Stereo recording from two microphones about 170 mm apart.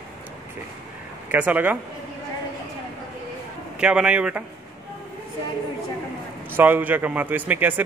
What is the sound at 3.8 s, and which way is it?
Speech, 5° right (ahead or behind).